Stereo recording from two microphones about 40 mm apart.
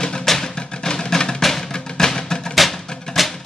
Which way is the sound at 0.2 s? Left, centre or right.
Centre.